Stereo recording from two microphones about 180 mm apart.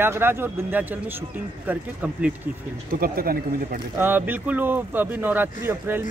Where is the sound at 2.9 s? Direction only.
55° right (ahead or behind).